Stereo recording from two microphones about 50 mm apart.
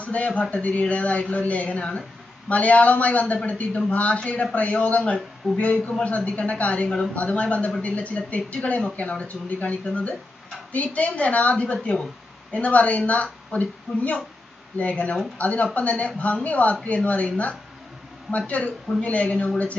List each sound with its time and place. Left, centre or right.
0.0 s a woman's voice: left